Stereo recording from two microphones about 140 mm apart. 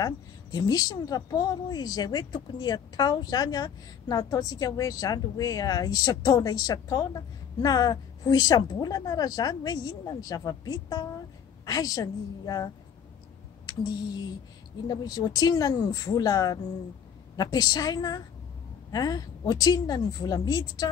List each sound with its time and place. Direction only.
0.0 s a woman's voice: 25° left (ahead or behind)
14.9 s a woman's voice: 25° left (ahead or behind)